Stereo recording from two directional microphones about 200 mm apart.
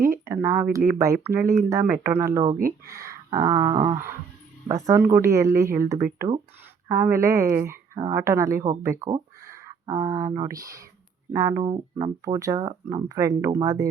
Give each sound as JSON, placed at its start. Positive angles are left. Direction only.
{"t": 0.4, "sound": "speech", "side_deg": -15}
{"t": 2.8, "sound": "a sound", "side_deg": -15}
{"t": 4.7, "sound": "speech", "side_deg": -15}